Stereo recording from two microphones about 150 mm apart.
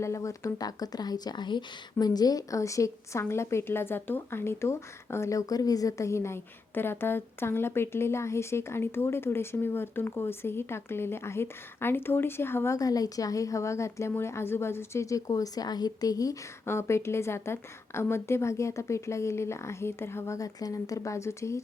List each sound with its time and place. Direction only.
0.0 s speech: 20° left (ahead or behind)